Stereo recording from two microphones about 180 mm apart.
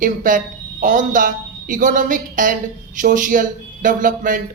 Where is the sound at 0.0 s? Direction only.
50° right (ahead or behind).